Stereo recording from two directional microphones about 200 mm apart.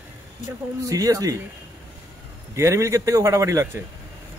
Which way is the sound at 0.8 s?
15° right (ahead or behind).